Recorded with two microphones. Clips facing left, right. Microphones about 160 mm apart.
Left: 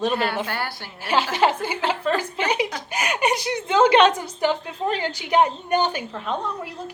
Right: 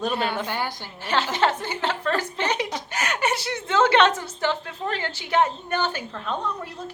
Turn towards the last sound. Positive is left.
turn(degrees=15)  # may be behind; listen again after turning